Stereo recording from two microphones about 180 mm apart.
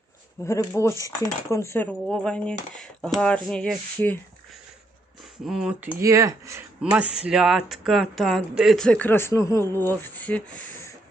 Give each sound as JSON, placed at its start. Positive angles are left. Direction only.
{"t": 0.4, "sound": "speech", "side_deg": 15}
{"t": 5.5, "sound": "speech", "side_deg": -5}
{"t": 6.0, "sound": "speech", "side_deg": -15}